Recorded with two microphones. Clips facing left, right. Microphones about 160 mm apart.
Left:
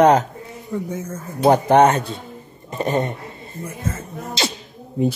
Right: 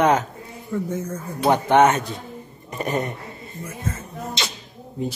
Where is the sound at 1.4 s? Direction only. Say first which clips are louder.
Left 3 dB; 40° left (ahead or behind).